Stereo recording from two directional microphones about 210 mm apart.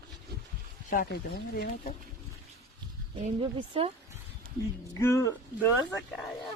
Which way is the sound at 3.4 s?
30° right (ahead or behind).